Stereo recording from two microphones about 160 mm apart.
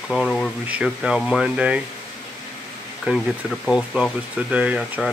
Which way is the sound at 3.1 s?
Centre (ahead or behind).